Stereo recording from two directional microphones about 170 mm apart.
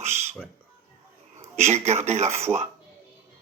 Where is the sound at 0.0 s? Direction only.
40° right (ahead or behind).